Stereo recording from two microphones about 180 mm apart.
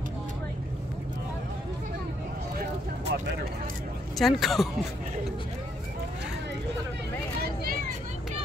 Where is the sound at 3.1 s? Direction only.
75° right (ahead or behind).